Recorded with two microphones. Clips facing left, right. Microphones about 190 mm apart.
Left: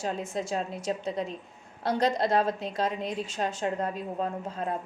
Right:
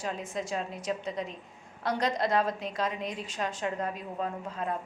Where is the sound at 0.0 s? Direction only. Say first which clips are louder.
Left 3 dB; 25° left (ahead or behind).